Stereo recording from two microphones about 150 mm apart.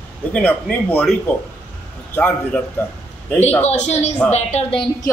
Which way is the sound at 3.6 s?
50° left (ahead or behind).